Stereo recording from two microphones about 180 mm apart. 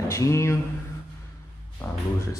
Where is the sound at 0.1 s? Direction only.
15° left (ahead or behind).